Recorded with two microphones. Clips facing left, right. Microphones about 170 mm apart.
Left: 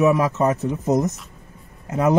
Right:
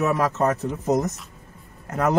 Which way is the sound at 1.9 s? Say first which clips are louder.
Left 3 dB; 15° left (ahead or behind).